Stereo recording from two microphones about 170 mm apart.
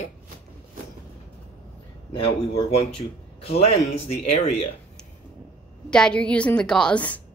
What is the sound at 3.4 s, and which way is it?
Speech, 35° left (ahead or behind).